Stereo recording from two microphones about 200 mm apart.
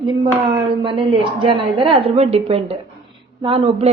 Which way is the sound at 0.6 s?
25° right (ahead or behind).